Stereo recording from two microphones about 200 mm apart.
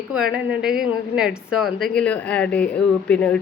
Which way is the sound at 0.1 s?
5° right (ahead or behind).